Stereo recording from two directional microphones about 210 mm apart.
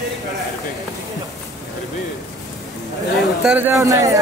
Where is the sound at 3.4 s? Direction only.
5° right (ahead or behind).